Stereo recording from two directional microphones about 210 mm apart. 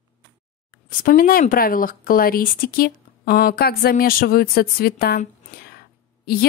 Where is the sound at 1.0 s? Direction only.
45° left (ahead or behind).